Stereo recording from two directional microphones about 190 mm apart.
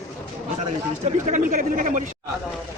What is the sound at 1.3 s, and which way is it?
Speech, 45° right (ahead or behind).